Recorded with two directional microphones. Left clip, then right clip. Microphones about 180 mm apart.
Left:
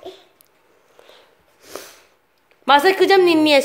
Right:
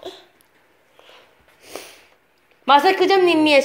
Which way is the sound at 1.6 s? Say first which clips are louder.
Even; 20° left (ahead or behind).